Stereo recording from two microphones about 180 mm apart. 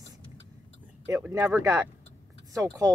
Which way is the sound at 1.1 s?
10° right (ahead or behind).